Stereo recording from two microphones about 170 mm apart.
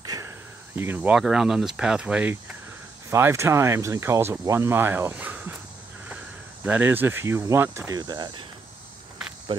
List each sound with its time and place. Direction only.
0.0 s a sound: 20° right (ahead or behind)
0.7 s speech: 10° right (ahead or behind)
6.6 s speech: 10° right (ahead or behind); by 8.5 s 25° right (ahead or behind)
9.5 s speech: 30° right (ahead or behind)